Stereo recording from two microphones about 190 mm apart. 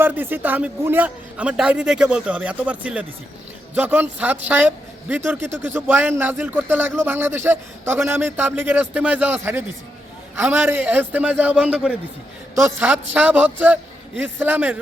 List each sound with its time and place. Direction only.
0.0 s speech: 10° right (ahead or behind)